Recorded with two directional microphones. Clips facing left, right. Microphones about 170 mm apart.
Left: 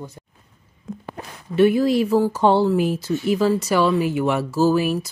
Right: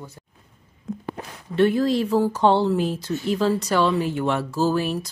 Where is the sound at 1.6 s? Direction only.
10° left (ahead or behind).